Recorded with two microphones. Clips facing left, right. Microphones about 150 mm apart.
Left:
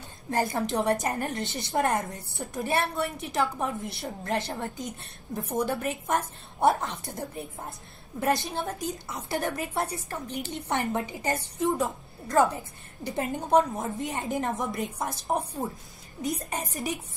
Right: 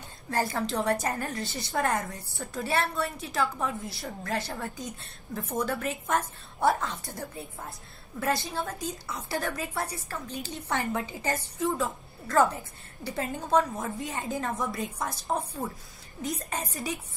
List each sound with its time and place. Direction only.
0.3 s a woman's voice: 20° left (ahead or behind)